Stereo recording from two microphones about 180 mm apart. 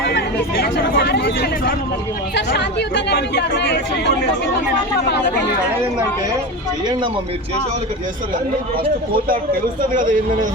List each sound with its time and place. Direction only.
0.1 s speech: 65° left (ahead or behind)
2.3 s speech: 70° left (ahead or behind)
9.9 s a man's voice: 50° right (ahead or behind)